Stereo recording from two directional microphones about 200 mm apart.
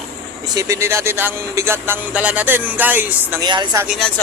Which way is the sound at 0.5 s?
15° right (ahead or behind).